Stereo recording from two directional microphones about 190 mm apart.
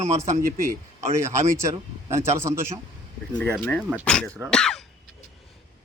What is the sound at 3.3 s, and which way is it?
Speech, 5° left (ahead or behind).